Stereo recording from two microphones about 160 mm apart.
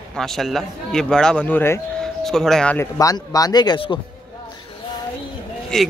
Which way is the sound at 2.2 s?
Centre (ahead or behind).